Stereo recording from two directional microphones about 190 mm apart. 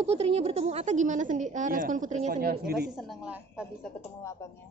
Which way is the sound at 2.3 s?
55° right (ahead or behind).